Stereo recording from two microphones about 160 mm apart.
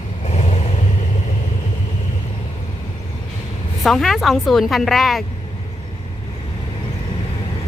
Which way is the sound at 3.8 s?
Centre (ahead or behind).